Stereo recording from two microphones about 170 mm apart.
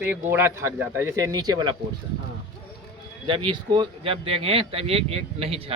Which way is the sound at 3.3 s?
30° right (ahead or behind).